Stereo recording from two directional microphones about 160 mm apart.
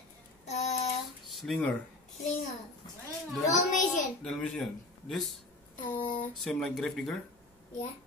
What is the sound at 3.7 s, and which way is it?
Speech, 50° left (ahead or behind).